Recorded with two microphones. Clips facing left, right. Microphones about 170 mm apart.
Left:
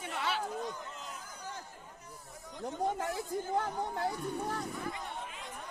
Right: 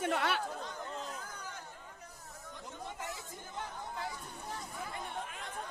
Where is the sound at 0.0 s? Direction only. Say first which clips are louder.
Right 4 dB; 55° right (ahead or behind).